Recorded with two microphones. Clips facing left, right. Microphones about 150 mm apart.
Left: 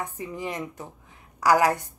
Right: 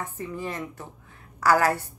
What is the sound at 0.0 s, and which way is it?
A woman's voice, 15° left (ahead or behind).